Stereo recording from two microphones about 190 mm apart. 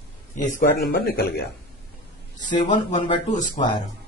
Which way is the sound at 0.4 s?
45° left (ahead or behind).